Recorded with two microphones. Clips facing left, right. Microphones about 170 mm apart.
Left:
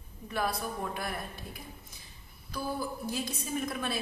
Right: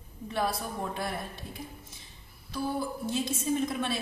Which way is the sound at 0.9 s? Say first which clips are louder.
Right 2 dB; 25° right (ahead or behind).